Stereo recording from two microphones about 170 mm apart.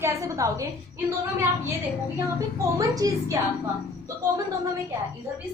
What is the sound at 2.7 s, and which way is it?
Speech, 20° right (ahead or behind).